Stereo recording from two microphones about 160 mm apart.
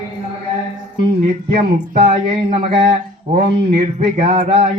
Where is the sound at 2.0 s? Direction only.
35° right (ahead or behind).